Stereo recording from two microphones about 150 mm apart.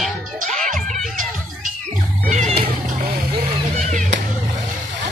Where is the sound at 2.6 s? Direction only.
90° right.